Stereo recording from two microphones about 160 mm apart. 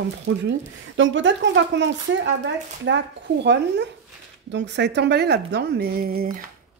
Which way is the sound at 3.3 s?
90° right.